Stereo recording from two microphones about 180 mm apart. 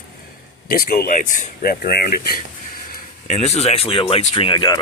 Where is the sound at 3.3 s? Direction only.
40° left (ahead or behind).